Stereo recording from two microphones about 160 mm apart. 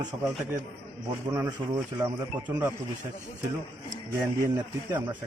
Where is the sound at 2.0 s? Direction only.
15° right (ahead or behind).